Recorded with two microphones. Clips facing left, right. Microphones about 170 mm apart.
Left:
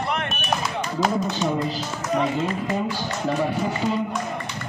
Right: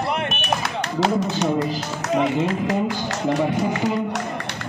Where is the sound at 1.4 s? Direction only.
75° right (ahead or behind).